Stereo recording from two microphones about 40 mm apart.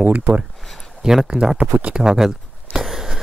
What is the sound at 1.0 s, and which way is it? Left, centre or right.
Speech, centre.